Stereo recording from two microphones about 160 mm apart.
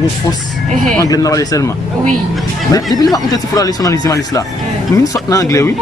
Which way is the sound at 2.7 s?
25° left (ahead or behind).